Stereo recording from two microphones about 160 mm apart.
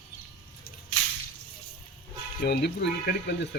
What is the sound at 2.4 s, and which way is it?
Speech, 85° left.